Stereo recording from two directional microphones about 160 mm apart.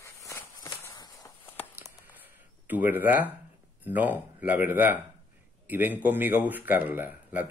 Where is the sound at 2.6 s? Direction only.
10° right (ahead or behind).